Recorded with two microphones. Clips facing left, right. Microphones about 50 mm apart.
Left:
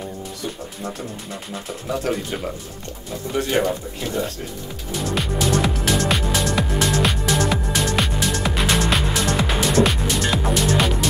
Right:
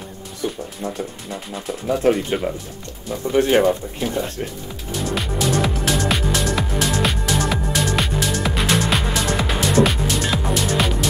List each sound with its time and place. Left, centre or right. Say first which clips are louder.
1.9 s speech: right 6 dB; right
3.6 s speech: right 5 dB; right
5.1 s music: even; centre